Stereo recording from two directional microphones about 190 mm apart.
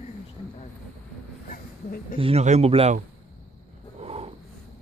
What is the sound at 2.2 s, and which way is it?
Speech, 35° right (ahead or behind).